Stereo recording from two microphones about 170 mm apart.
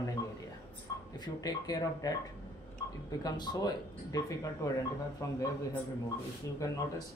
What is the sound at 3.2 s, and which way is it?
A man's voice, 25° left (ahead or behind).